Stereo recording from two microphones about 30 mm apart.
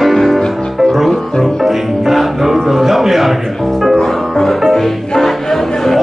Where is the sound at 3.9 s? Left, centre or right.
Centre.